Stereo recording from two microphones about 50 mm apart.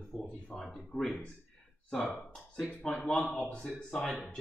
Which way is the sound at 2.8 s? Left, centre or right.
Centre.